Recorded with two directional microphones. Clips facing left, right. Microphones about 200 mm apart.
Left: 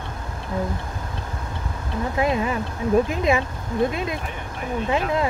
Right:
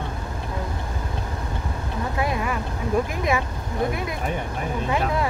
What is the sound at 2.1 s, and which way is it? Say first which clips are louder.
Speech: left 4 dB; 20° left (ahead or behind).